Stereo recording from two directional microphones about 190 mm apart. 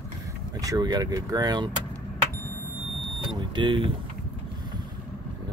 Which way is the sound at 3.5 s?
25° right (ahead or behind).